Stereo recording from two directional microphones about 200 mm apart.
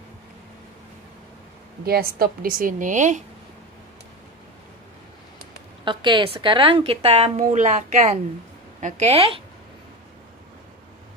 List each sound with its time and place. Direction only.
1.9 s a woman's voice: 50° right (ahead or behind)
5.9 s a woman's voice: 25° right (ahead or behind)